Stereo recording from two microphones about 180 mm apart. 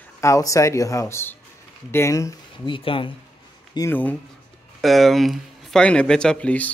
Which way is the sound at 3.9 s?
10° left (ahead or behind).